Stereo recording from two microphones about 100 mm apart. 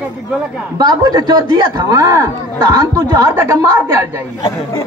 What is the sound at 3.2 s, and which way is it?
A woman's voice, 25° right (ahead or behind).